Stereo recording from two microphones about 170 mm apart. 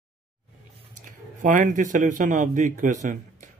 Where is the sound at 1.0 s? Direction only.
50° right (ahead or behind).